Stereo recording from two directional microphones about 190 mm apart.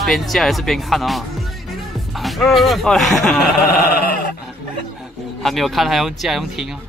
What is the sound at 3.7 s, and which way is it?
Sheep, 50° left (ahead or behind).